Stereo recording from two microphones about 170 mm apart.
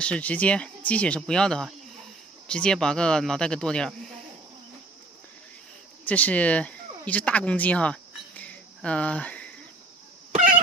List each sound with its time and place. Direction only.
0.0 s speech: 5° left (ahead or behind)
6.0 s speech: 10° left (ahead or behind)
10.3 s cat: 50° right (ahead or behind)